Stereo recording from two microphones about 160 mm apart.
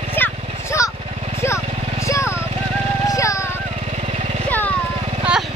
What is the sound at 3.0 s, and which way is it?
Music, 20° left (ahead or behind).